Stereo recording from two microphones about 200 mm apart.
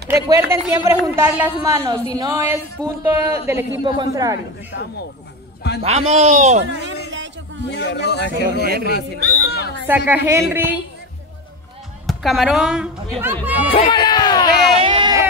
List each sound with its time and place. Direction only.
0.1 s a woman's voice: 15° right (ahead or behind)
5.8 s speech: 35° right (ahead or behind)
7.7 s speech: 60° left (ahead or behind)
8.6 s a man's voice: 50° right (ahead or behind)
8.9 s speech: 50° left (ahead or behind)
9.8 s a woman's voice: 10° right (ahead or behind)
12.1 s a woman's voice: centre (ahead or behind)
13.7 s speech: 25° left (ahead or behind)
14.8 s a sound: 25° right (ahead or behind)